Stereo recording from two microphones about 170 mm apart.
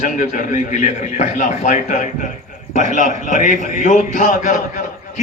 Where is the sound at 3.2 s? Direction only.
50° left (ahead or behind).